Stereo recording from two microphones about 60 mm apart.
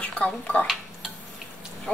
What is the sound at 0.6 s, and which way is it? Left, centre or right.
Dishes, centre.